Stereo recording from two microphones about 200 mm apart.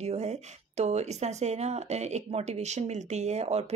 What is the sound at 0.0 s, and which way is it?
Speech, 35° right (ahead or behind).